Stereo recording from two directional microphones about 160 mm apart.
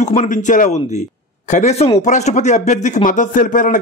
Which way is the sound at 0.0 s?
50° left (ahead or behind).